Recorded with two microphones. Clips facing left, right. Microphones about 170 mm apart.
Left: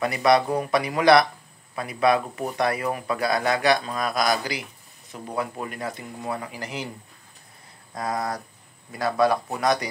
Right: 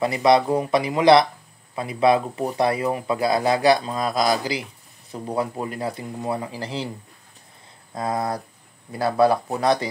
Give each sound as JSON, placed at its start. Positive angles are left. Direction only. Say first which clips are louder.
{"t": 0.0, "sound": "speech", "louder": "right 2 dB", "side_deg": -25}
{"t": 7.9, "sound": "speech", "louder": "right 3 dB", "side_deg": -25}